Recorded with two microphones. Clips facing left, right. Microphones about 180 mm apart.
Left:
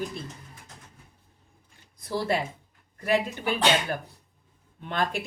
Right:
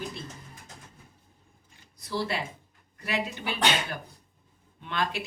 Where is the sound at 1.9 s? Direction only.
50° left (ahead or behind).